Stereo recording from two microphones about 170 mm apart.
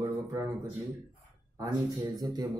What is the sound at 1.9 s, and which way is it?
Speech, 25° right (ahead or behind).